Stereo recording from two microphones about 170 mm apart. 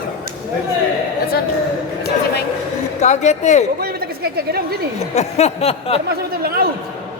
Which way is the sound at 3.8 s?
65° right (ahead or behind).